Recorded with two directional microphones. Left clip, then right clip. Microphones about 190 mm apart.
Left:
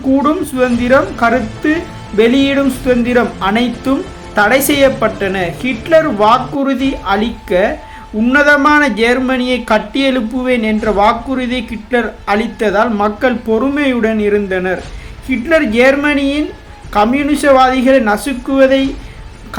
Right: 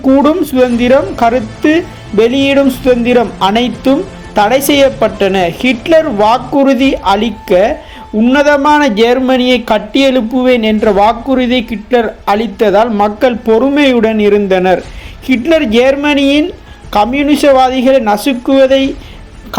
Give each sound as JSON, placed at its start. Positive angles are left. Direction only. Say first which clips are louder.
{"t": 0.2, "sound": "speech", "louder": "right 4 dB", "side_deg": -25}